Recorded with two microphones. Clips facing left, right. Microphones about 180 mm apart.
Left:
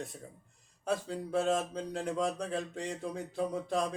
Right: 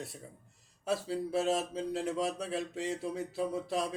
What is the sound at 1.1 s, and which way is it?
Speech, 5° right (ahead or behind).